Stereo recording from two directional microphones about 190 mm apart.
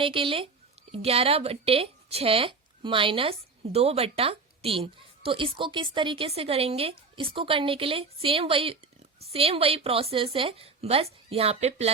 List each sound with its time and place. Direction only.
0.0 s a woman's voice: 30° right (ahead or behind)